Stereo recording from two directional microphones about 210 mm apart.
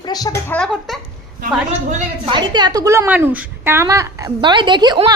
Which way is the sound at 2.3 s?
20° right (ahead or behind).